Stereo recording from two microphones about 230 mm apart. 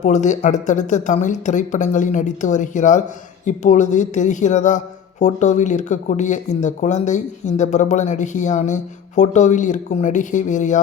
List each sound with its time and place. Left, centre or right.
0.0 s speech: left